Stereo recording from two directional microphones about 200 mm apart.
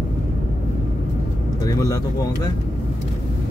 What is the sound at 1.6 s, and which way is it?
Speech, 15° left (ahead or behind).